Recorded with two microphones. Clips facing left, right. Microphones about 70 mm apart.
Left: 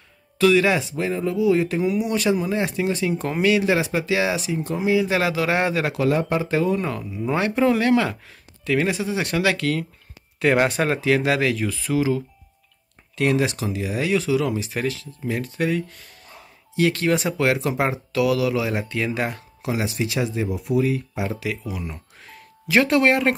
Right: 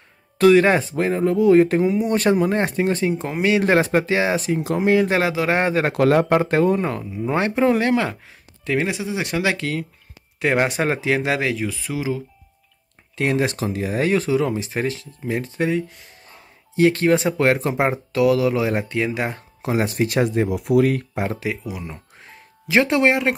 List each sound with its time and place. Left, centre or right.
0.4 s speech: right
3.6 s speech: right
4.7 s speech: right
5.1 s speech: right
5.9 s speech: right
6.8 s speech: right
11.6 s speech: centre
13.1 s speech: right
19.6 s speech: right
20.4 s speech: right
21.4 s speech: right